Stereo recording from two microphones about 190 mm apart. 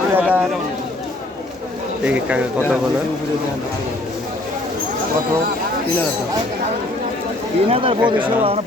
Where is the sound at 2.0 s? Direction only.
5° right (ahead or behind).